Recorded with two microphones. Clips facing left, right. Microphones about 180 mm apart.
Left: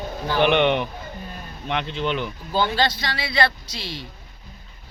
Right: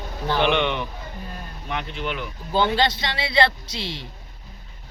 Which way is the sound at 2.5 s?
25° right (ahead or behind).